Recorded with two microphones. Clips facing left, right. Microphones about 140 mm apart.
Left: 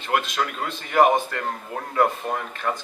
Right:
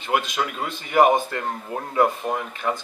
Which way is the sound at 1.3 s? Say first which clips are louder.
Right 1 dB; 20° right (ahead or behind).